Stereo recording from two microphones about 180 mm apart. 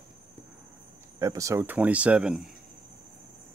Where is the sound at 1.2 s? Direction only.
15° right (ahead or behind).